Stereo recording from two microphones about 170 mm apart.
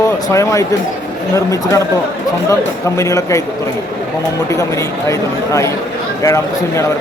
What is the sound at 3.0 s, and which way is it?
Speech, 20° left (ahead or behind).